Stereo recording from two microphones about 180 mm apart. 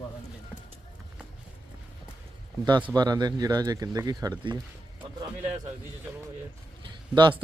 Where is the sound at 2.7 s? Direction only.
25° right (ahead or behind).